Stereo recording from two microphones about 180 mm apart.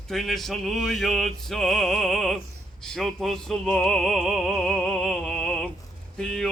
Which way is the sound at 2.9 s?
Centre (ahead or behind).